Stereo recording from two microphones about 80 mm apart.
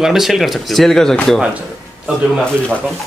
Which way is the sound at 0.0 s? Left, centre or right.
Centre.